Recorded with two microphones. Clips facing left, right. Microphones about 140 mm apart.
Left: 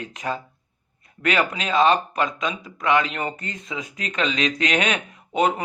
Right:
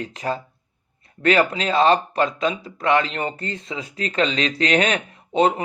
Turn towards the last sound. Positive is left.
turn(degrees=-30)  # may be behind; listen again after turning